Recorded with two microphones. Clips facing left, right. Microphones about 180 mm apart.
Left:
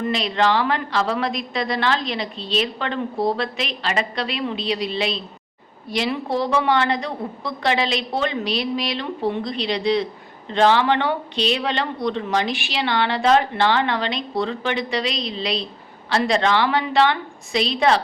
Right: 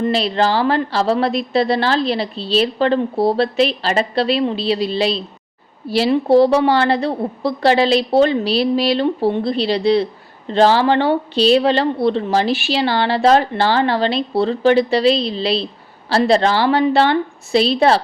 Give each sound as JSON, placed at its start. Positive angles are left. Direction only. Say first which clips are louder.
{"t": 0.0, "sound": "a woman's voice", "louder": "right 4 dB", "side_deg": -35}